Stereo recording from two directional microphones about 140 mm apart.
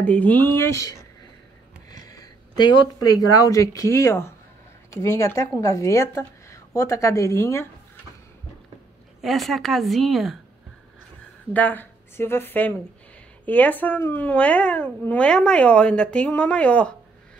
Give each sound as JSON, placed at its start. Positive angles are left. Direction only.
{"t": 0.0, "sound": "a woman's voice", "side_deg": 10}
{"t": 9.2, "sound": "a woman's voice", "side_deg": 0}
{"t": 11.5, "sound": "speech", "side_deg": 15}